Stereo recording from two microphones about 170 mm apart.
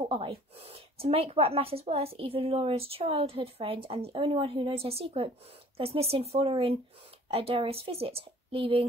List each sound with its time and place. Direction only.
0.1 s speech: 30° right (ahead or behind)